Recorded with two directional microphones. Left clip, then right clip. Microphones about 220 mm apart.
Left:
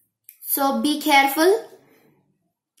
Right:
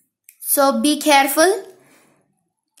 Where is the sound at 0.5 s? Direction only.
45° right (ahead or behind).